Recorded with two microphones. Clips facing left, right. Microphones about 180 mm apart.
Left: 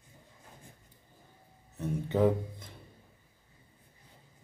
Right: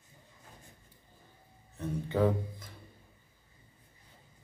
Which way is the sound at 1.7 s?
20° left (ahead or behind).